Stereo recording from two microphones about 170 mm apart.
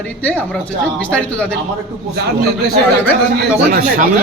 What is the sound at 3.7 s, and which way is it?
Speech, 55° right (ahead or behind).